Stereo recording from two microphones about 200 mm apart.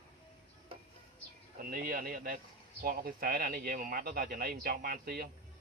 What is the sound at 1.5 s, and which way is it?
Speech, 45° right (ahead or behind).